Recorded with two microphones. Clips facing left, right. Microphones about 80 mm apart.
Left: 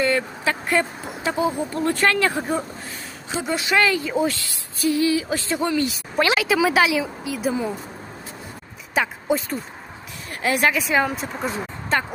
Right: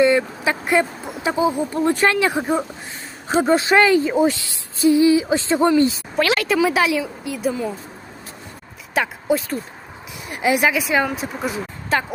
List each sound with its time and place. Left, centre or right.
0.0 s speech: centre
3.2 s a woman's voice: right
6.1 s a woman's voice: centre
9.0 s speech: centre
10.2 s speech: centre